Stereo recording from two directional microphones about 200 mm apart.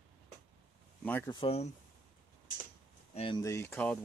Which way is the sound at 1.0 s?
10° left (ahead or behind).